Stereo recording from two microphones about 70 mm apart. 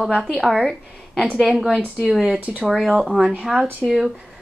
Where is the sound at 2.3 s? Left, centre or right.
Right.